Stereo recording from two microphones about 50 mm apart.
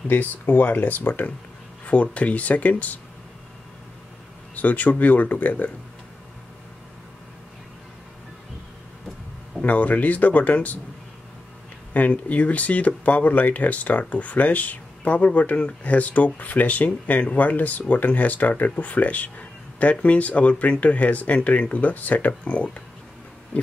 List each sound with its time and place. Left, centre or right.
0.1 s speech: left
1.9 s speech: left
4.6 s speech: left
9.6 s speech: left
11.9 s speech: left
23.5 s oink: left